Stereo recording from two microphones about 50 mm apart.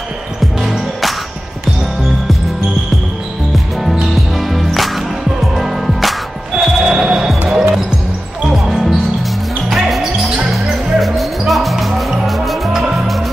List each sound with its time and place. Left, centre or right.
0.6 s music: centre
3.8 s music: centre
6.5 s a sound: centre
7.2 s basketball bounce: centre
11.0 s music: centre